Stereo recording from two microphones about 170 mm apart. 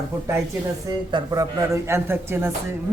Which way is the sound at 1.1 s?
25° right (ahead or behind).